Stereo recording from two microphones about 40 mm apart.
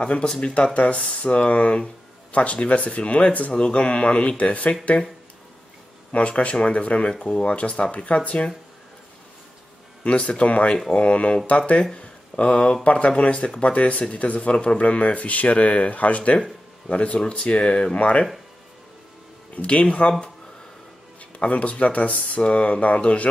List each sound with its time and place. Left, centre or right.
0.0 s speech: left
6.1 s speech: left
10.0 s speech: left
19.5 s speech: left
21.4 s speech: left